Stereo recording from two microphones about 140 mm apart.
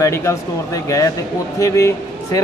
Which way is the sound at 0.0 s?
20° left (ahead or behind).